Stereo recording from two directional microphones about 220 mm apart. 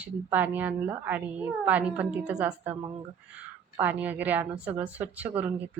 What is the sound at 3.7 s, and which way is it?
Speech, 10° right (ahead or behind).